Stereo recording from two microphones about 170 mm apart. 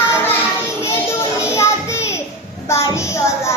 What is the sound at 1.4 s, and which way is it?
Child singing, 15° left (ahead or behind).